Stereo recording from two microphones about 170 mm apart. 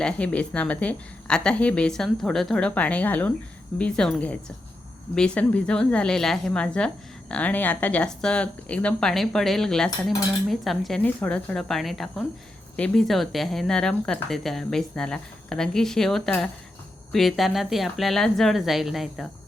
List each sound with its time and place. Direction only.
0.0 s a woman's voice: 5° left (ahead or behind)